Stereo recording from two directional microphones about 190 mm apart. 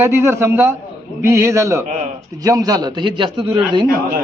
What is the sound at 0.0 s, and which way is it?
A man's voice, 15° right (ahead or behind).